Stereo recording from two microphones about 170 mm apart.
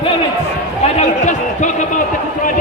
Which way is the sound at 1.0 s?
45° left (ahead or behind).